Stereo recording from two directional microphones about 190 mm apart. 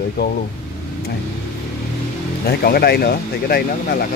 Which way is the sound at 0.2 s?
60° left (ahead or behind).